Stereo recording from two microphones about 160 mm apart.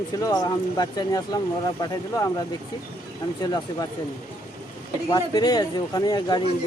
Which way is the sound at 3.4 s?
25° left (ahead or behind).